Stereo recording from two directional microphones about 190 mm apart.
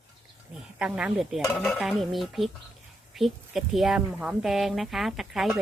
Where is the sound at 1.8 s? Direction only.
Centre (ahead or behind).